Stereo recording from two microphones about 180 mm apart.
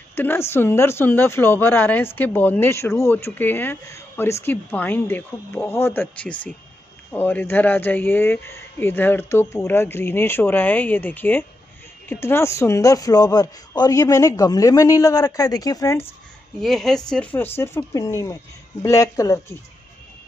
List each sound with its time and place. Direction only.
0.1 s a woman's voice: 15° left (ahead or behind)
16.6 s speech: centre (ahead or behind); by 19.4 s 20° left (ahead or behind)